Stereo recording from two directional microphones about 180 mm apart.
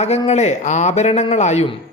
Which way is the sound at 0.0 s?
35° left (ahead or behind).